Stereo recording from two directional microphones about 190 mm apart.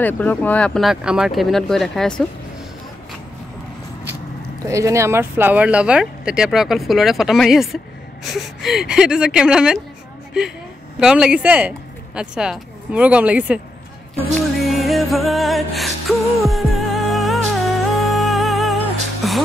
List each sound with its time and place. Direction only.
0.0 s speech: 10° left (ahead or behind)
4.6 s speech: 15° right (ahead or behind)
11.0 s speech: 5° right (ahead or behind)
14.6 s music: centre (ahead or behind)